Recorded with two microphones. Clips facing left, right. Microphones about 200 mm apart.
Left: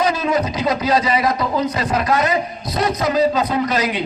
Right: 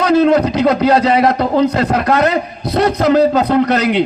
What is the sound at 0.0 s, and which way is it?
A man's voice, 60° right (ahead or behind).